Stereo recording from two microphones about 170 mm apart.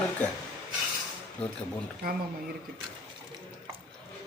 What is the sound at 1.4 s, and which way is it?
Speech, 35° left (ahead or behind).